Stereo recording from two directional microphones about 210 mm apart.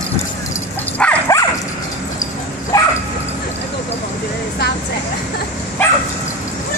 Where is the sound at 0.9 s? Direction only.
5° left (ahead or behind).